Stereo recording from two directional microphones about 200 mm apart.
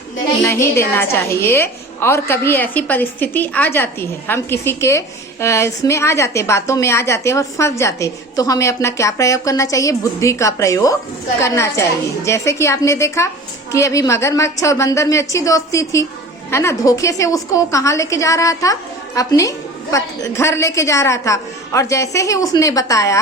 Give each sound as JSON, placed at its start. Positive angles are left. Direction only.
{"t": 0.4, "sound": "a woman's voice", "side_deg": 15}